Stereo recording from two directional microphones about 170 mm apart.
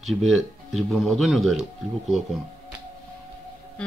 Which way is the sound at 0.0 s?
Centre (ahead or behind).